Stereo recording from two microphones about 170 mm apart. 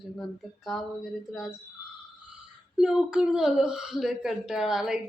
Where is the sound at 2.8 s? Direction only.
5° right (ahead or behind).